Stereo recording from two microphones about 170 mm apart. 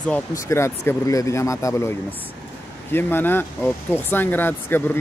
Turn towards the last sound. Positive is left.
turn(degrees=10)  # may be behind; listen again after turning